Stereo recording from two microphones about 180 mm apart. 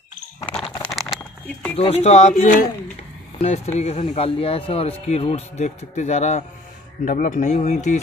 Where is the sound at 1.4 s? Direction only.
10° left (ahead or behind).